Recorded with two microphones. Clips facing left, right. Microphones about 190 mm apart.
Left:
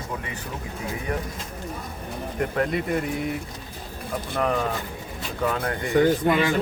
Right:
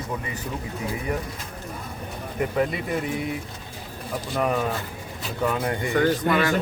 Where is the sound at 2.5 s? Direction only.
5° right (ahead or behind).